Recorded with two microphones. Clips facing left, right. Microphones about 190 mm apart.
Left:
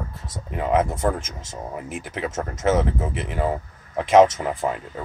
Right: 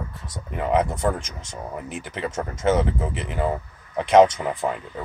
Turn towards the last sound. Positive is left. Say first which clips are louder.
# left 1 dB
turn(degrees=0)  # may be behind; listen again after turning